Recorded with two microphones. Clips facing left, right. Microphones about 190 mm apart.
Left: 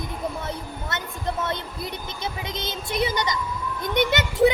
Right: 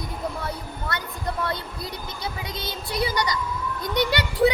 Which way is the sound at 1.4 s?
20° left (ahead or behind).